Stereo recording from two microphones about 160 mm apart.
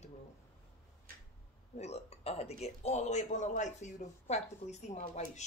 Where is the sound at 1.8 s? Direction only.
40° left (ahead or behind).